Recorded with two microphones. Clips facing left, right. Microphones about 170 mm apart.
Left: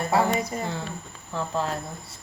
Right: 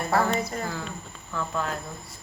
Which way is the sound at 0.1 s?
15° left (ahead or behind).